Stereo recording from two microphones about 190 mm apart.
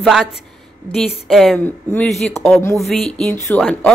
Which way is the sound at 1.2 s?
Centre (ahead or behind).